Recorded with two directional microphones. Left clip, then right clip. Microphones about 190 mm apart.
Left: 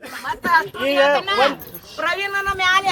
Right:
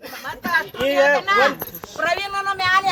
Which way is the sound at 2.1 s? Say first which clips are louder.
Left 1 dB; centre (ahead or behind).